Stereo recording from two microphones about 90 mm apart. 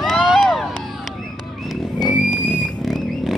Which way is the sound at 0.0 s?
Centre (ahead or behind).